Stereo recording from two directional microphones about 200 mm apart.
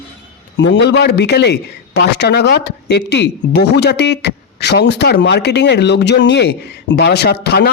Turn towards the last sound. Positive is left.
turn(degrees=55)  # may be behind; listen again after turning